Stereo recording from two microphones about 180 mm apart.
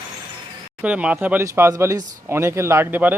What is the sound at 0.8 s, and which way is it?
Speech, 5° right (ahead or behind).